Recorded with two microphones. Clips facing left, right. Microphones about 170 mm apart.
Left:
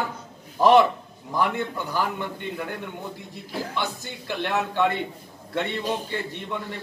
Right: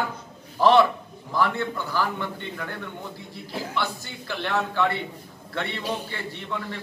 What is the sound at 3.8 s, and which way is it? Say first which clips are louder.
A man's voice: even; 15° left (ahead or behind).